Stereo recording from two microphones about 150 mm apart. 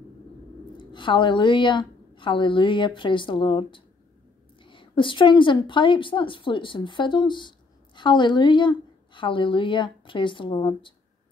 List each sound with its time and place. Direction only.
0.7 s a woman's voice: 30° left (ahead or behind)